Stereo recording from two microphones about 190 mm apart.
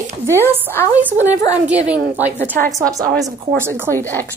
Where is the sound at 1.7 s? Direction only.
5° right (ahead or behind).